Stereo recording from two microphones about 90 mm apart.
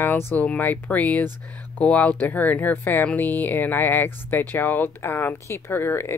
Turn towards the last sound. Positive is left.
turn(degrees=25)  # may be behind; listen again after turning